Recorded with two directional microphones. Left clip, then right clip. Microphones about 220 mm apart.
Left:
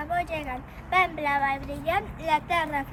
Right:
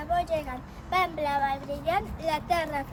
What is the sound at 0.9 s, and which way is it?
A child's voice, 15° right (ahead or behind).